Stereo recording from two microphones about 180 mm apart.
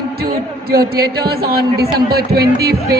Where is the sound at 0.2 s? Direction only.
60° right (ahead or behind).